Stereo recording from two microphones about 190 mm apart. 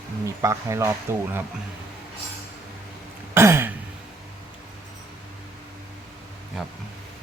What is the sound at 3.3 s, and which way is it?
Throat clearing, 15° right (ahead or behind).